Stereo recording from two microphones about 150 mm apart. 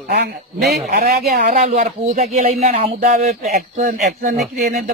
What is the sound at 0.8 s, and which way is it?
Speech, 90° right.